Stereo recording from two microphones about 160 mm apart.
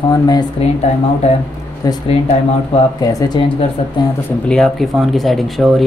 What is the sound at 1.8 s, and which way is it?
Speech, 20° left (ahead or behind).